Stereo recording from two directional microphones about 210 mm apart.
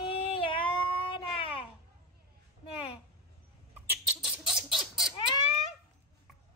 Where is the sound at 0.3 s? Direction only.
25° left (ahead or behind).